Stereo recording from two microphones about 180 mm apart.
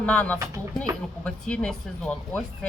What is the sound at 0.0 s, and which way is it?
Speech, 5° left (ahead or behind).